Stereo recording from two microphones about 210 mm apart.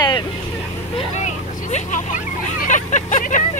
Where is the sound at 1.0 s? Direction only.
35° left (ahead or behind).